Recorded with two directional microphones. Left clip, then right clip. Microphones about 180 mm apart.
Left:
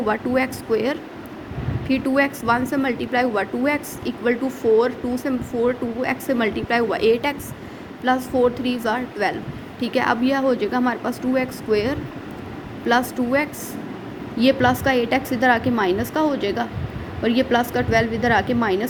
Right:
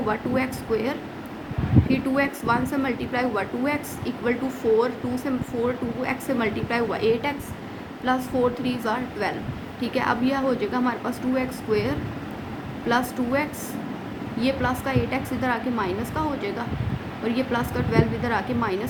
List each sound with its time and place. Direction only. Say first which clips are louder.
0.1 s a woman's voice: left 5 dB; 35° left (ahead or behind)